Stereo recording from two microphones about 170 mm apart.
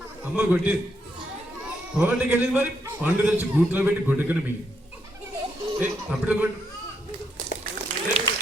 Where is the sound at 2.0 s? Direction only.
10° right (ahead or behind).